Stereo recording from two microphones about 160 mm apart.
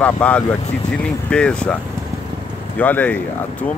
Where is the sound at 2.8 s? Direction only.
10° left (ahead or behind).